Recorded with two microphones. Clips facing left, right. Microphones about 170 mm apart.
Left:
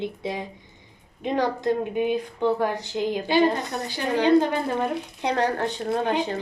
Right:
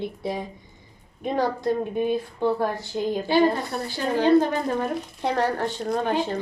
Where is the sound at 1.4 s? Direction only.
15° left (ahead or behind).